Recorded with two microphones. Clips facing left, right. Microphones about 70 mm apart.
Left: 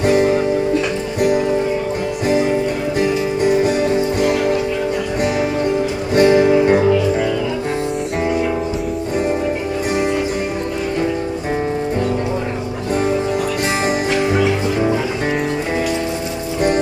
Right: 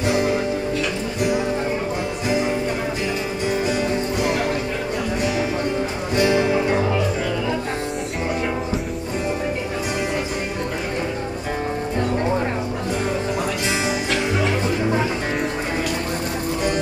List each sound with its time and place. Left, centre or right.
0.0 s music: left
6.1 s music: left